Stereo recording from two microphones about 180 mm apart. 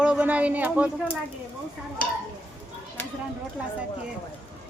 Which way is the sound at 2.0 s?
50° left (ahead or behind).